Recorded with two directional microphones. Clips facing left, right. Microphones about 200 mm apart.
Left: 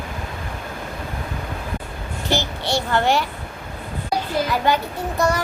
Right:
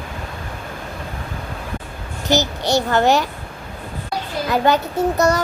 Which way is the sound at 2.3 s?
40° right (ahead or behind).